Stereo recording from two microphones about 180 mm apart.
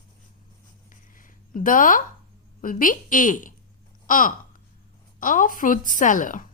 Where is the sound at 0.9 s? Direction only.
50° left (ahead or behind).